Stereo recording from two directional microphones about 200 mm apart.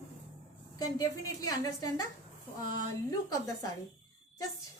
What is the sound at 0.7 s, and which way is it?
A woman's voice, 20° left (ahead or behind).